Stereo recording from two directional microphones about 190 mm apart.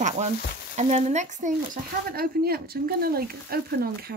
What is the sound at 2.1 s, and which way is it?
Speech, 55° right (ahead or behind).